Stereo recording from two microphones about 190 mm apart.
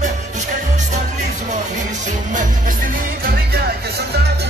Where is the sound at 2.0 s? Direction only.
40° right (ahead or behind).